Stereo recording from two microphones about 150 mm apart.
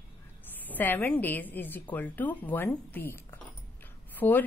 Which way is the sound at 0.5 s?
10° left (ahead or behind).